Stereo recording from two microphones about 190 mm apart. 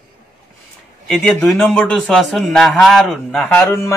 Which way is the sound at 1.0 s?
5° left (ahead or behind).